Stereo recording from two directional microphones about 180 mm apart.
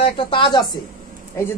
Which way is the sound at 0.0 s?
25° left (ahead or behind).